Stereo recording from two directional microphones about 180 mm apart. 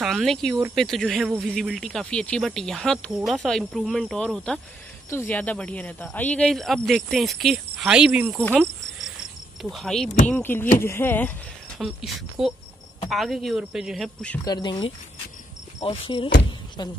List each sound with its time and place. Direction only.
0.0 s speech: centre (ahead or behind)
9.6 s speech: centre (ahead or behind)
11.8 s speech: centre (ahead or behind)
14.4 s speech: 25° left (ahead or behind)